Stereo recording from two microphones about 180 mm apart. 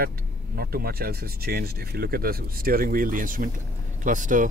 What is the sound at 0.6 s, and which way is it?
Speech, 55° right (ahead or behind).